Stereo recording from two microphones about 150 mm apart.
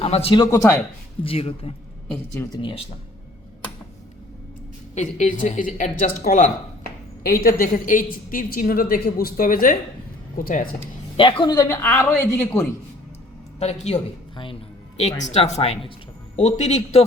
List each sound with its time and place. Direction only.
0.0 s a man's voice: 45° left (ahead or behind)
0.5 s a man's voice: 20° left (ahead or behind)
1.2 s a woman's voice: 40° left (ahead or behind)
2.0 s a woman's voice: 10° left (ahead or behind)
2.5 s a woman's voice: 35° left (ahead or behind)
4.9 s a woman's voice: 55° left (ahead or behind)
7.4 s a woman's voice: 80° left
11.2 s a woman's voice: 35° left (ahead or behind)
11.7 s a woman's voice: 15° left (ahead or behind)
13.6 s a man's voice: 45° left (ahead or behind)
14.3 s music: 35° left (ahead or behind)
15.2 s a man's voice: 50° left (ahead or behind)